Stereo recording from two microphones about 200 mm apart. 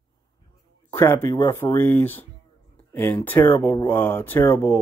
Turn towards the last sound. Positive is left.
turn(degrees=10)  # may be behind; listen again after turning